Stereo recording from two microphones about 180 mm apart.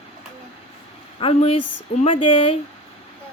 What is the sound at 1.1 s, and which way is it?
A woman's voice, 30° left (ahead or behind).